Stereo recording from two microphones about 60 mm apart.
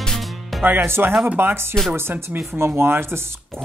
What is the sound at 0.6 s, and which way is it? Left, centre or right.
Speech, right.